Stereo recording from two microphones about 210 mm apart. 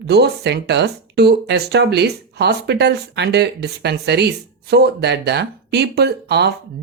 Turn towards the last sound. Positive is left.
turn(degrees=-50)  # may be behind; listen again after turning